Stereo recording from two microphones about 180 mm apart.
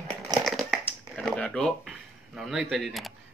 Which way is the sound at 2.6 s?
Centre (ahead or behind).